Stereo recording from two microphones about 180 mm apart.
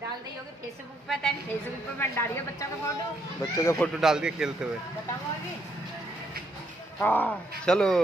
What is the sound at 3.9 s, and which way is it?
Speech, 5° right (ahead or behind).